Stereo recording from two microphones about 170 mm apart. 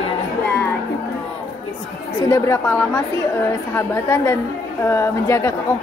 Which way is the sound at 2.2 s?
20° left (ahead or behind).